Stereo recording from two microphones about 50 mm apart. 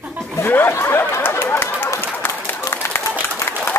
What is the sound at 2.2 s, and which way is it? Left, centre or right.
Run, left.